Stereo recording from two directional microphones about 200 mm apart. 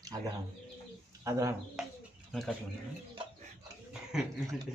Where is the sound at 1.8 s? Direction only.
Centre (ahead or behind).